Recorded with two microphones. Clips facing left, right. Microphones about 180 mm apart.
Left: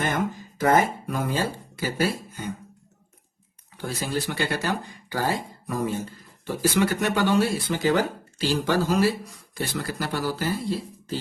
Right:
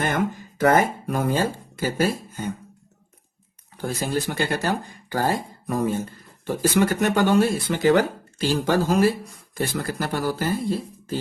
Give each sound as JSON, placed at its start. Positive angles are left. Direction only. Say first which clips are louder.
{"t": 0.6, "sound": "speech", "louder": "right 2 dB", "side_deg": -55}
{"t": 3.8, "sound": "speech", "louder": "right 3 dB", "side_deg": -45}